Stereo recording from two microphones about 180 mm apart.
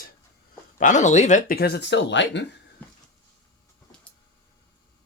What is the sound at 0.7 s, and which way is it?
Speech, 45° left (ahead or behind).